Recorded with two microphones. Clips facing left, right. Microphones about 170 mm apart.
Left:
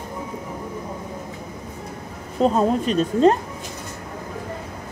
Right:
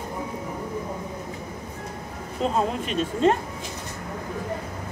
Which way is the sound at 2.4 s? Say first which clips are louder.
Left 6 dB; 40° left (ahead or behind).